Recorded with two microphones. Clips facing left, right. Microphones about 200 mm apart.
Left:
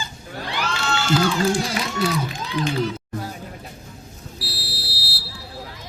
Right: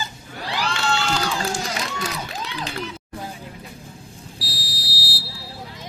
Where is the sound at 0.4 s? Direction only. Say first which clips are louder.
Right 1 dB; 35° right (ahead or behind).